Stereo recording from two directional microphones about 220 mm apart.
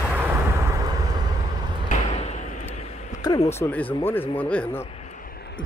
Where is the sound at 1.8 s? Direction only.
30° left (ahead or behind).